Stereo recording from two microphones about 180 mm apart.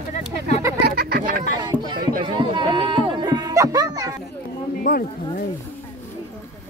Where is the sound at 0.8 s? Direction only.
60° right (ahead or behind).